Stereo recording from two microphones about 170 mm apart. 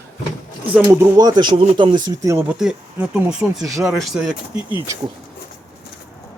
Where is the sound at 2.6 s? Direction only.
5° right (ahead or behind).